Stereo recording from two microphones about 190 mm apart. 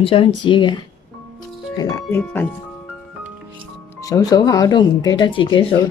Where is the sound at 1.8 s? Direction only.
20° left (ahead or behind).